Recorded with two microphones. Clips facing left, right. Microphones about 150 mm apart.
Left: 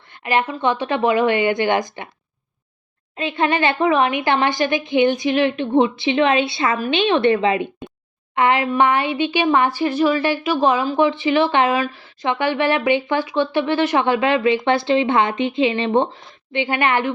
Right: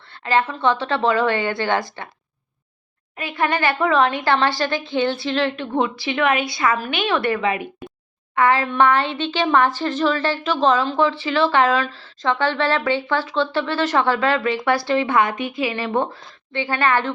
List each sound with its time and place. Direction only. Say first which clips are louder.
0.1 s a woman's voice: even; 15° left (ahead or behind)
3.2 s a woman's voice: left 3 dB; 25° left (ahead or behind)